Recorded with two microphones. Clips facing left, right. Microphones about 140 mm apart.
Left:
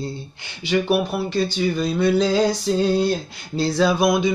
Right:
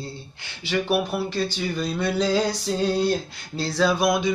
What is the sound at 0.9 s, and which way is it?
Speech, centre (ahead or behind).